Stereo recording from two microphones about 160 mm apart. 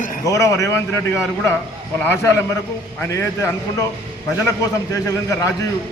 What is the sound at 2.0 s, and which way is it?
A man's voice, 15° left (ahead or behind).